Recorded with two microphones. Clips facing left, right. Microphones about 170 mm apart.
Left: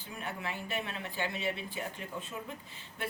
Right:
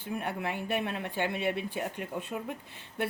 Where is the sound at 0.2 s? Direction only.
55° right (ahead or behind).